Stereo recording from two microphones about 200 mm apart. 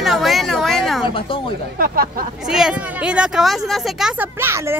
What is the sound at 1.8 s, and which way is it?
Speech, 45° right (ahead or behind).